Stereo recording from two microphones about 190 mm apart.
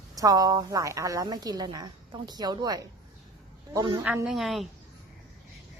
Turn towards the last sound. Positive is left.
turn(degrees=0)  # may be behind; listen again after turning